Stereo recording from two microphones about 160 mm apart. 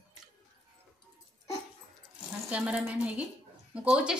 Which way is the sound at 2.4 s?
5° right (ahead or behind).